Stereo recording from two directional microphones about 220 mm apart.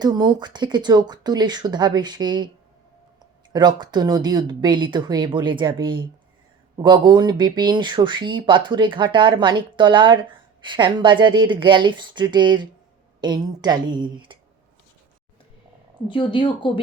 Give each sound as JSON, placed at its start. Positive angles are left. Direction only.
{"t": 0.0, "sound": "speech", "side_deg": -20}
{"t": 3.5, "sound": "speech", "side_deg": -20}
{"t": 16.0, "sound": "speech", "side_deg": 20}